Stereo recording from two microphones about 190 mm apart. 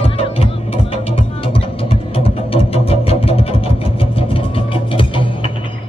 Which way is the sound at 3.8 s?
30° left (ahead or behind).